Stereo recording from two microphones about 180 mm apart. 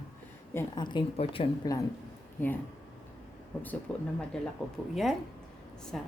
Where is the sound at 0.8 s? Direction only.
25° left (ahead or behind).